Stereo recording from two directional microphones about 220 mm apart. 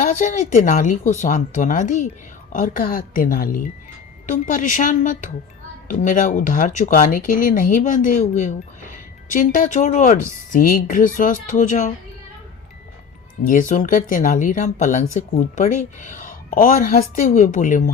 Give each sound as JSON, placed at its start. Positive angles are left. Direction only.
{"t": 0.0, "sound": "a woman's voice", "side_deg": 35}
{"t": 13.4, "sound": "a woman's voice", "side_deg": 35}